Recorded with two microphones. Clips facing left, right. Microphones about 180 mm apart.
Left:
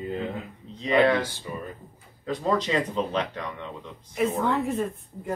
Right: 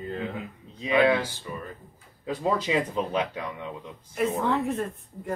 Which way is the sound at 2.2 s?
10° right (ahead or behind).